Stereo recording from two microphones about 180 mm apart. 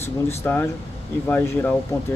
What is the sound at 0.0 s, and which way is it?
Speech, 15° left (ahead or behind).